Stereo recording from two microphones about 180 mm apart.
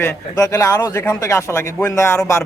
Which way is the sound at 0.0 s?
15° left (ahead or behind).